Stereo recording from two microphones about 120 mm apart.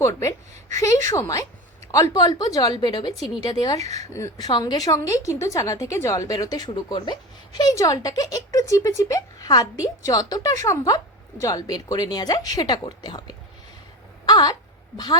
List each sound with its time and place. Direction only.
0.0 s a woman's voice: 25° left (ahead or behind)
14.3 s a sound: 35° left (ahead or behind)
14.9 s speech: 35° left (ahead or behind)